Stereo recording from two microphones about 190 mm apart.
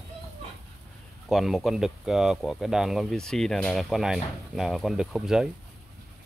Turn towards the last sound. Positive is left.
turn(degrees=0)  # may be behind; listen again after turning